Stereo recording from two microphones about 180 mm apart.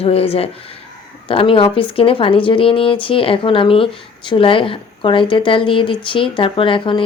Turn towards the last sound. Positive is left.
turn(degrees=30)  # may be behind; listen again after turning